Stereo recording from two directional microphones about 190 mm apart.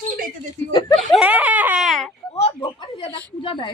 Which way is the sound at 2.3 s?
30° left (ahead or behind).